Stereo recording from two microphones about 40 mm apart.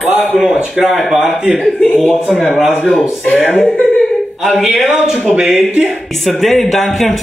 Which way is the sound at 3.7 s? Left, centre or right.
Left.